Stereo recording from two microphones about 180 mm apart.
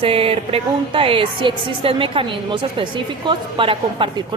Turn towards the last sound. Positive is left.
turn(degrees=-30)  # may be behind; listen again after turning